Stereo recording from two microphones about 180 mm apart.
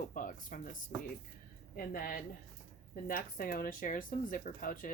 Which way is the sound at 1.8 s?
50° left (ahead or behind).